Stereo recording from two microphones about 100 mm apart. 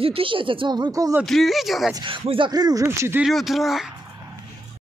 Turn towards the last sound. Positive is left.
turn(degrees=0)  # may be behind; listen again after turning